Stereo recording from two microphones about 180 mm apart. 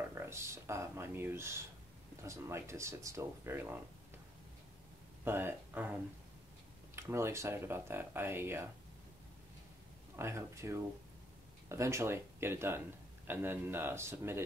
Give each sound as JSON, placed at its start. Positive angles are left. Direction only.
{"t": 0.1, "sound": "speech", "side_deg": -15}
{"t": 5.2, "sound": "speech", "side_deg": -10}
{"t": 7.0, "sound": "speech", "side_deg": -15}
{"t": 10.1, "sound": "speech", "side_deg": -15}